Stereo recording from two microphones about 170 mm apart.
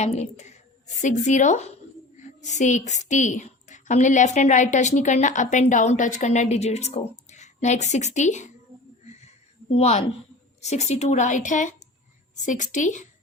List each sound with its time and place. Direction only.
0.0 s a woman's voice: 40° left (ahead or behind)
9.0 s a sound: 40° left (ahead or behind)
9.7 s a woman's voice: 40° left (ahead or behind)